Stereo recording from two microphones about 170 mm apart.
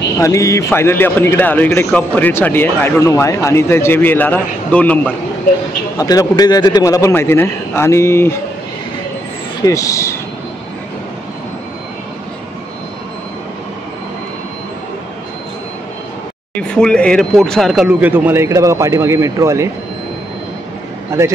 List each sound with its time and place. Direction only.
0.2 s speech: 20° left (ahead or behind)
5.9 s speech: 20° left (ahead or behind)
9.6 s speech: 20° left (ahead or behind)
16.6 s speech: 5° left (ahead or behind); by 19.7 s 15° right (ahead or behind)
21.1 s speech: 15° right (ahead or behind)